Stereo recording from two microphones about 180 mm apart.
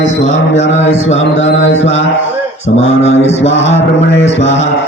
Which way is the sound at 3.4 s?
90° left.